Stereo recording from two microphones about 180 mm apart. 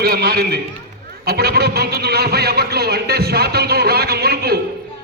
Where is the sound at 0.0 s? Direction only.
60° right (ahead or behind).